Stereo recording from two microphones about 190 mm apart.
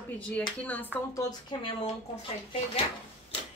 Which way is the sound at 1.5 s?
25° left (ahead or behind).